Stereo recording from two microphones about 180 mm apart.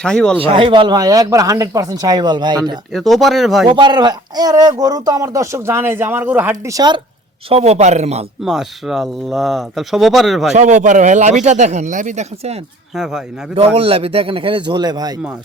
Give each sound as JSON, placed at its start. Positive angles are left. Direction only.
{"t": 0.0, "sound": "speech", "side_deg": 5}
{"t": 0.3, "sound": "speech", "side_deg": -30}
{"t": 2.9, "sound": "speech", "side_deg": 0}
{"t": 3.7, "sound": "speech", "side_deg": -25}
{"t": 7.5, "sound": "a man's voice", "side_deg": -35}
{"t": 8.4, "sound": "speech", "side_deg": 0}
{"t": 10.5, "sound": "a man's voice", "side_deg": -40}
{"t": 13.7, "sound": "a man's voice", "side_deg": -30}